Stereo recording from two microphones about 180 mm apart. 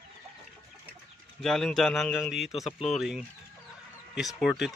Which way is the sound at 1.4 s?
Centre (ahead or behind).